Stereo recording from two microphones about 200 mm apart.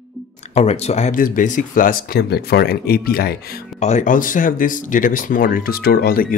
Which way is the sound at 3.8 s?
35° left (ahead or behind).